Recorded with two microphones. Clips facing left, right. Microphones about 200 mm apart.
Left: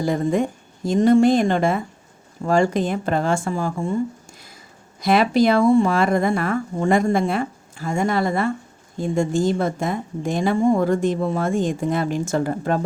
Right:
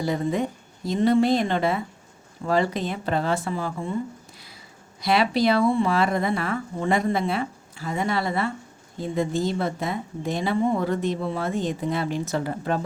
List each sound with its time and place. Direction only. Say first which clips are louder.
0.0 s a woman's voice: left 4 dB; 50° left (ahead or behind)
4.9 s a woman's voice: left 5 dB; 45° left (ahead or behind)